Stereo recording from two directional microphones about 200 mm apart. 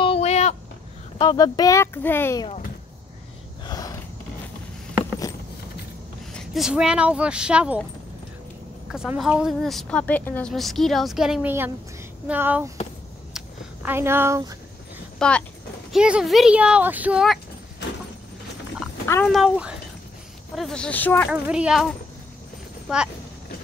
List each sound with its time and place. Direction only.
0.0 s a sound: 30° left (ahead or behind)
1.2 s speech: 20° left (ahead or behind)
3.6 s a sound: 20° left (ahead or behind)
6.3 s speech: centre (ahead or behind)
8.9 s a woman's voice: 5° right (ahead or behind)
13.8 s a woman's voice: 10° right (ahead or behind)
15.1 s speech: 5° left (ahead or behind)
19.2 s speech: centre (ahead or behind)
21.3 s speech: 5° right (ahead or behind)